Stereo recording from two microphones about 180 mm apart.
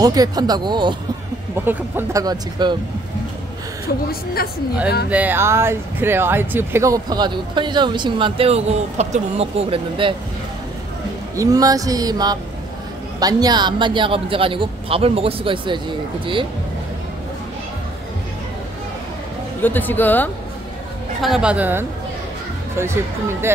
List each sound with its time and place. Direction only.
0.0 s speech: 20° right (ahead or behind)
3.8 s a woman's voice: 55° left (ahead or behind)
5.1 s speech: 10° right (ahead or behind); by 10.1 s 30° right (ahead or behind)
11.3 s speech: 20° right (ahead or behind)
19.6 s speech: 10° left (ahead or behind)
21.2 s a woman's voice: 5° right (ahead or behind)